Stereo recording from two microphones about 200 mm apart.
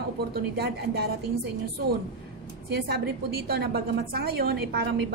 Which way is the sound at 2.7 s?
55° right (ahead or behind).